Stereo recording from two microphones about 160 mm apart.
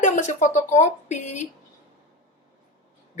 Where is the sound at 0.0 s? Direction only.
50° left (ahead or behind).